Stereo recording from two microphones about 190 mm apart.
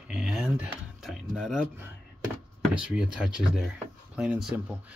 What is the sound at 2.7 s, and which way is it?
Speech, 5° right (ahead or behind).